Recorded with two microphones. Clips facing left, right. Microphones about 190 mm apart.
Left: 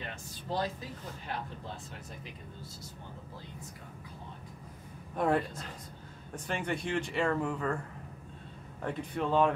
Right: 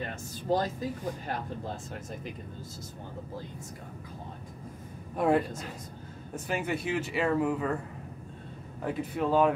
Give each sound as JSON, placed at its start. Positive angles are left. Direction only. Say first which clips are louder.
{"t": 0.0, "sound": "speech", "louder": "right 6 dB", "side_deg": -45}
{"t": 5.1, "sound": "a woman's voice", "louder": "right 3 dB", "side_deg": -5}
{"t": 8.8, "sound": "speech", "louder": "right 3 dB", "side_deg": -5}